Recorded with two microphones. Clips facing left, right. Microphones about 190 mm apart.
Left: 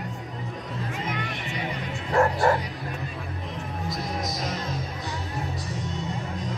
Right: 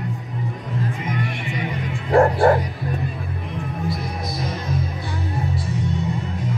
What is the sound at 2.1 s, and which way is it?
Bow-wow, 50° right (ahead or behind).